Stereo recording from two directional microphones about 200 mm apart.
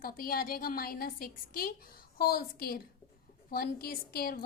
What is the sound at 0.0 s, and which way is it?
A woman's voice, 45° left (ahead or behind).